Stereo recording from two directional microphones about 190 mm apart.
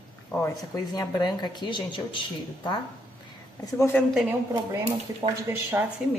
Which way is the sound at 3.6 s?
15° left (ahead or behind).